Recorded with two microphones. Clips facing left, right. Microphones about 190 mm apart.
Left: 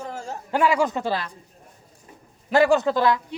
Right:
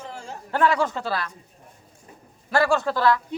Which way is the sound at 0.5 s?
10° left (ahead or behind).